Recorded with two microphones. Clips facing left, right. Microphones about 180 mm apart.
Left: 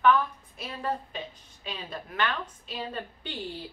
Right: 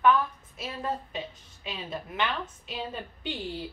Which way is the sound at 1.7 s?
5° right (ahead or behind).